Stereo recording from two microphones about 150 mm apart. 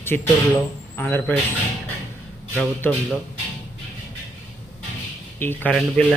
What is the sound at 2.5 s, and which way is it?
Speech, 10° left (ahead or behind).